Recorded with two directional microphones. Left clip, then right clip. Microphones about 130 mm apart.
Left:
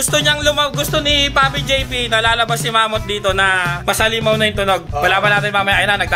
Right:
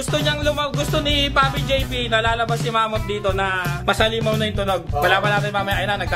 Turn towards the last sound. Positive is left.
turn(degrees=10)  # may be behind; listen again after turning